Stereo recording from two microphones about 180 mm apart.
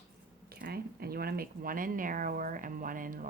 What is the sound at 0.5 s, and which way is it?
Speech, 60° right (ahead or behind).